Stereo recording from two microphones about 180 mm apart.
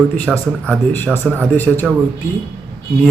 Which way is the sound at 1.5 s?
10° left (ahead or behind).